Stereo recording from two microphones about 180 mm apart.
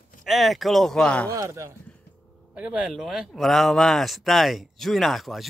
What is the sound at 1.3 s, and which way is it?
Speech, 15° right (ahead or behind).